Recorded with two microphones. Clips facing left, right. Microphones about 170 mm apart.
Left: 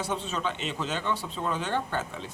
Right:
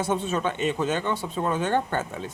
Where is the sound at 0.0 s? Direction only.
50° right (ahead or behind).